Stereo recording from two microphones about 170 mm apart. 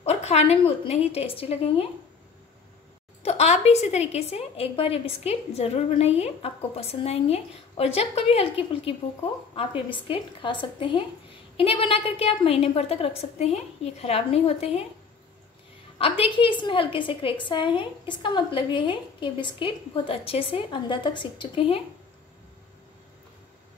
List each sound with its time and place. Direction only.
0.0 s a woman's voice: 40° left (ahead or behind)
3.2 s a woman's voice: 40° left (ahead or behind)
16.0 s a woman's voice: 30° left (ahead or behind)